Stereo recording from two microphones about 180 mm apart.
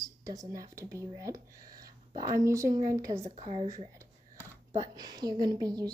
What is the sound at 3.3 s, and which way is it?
Speech, 35° right (ahead or behind).